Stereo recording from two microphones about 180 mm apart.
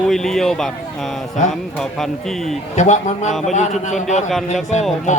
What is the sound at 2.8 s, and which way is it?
Speech, 40° left (ahead or behind).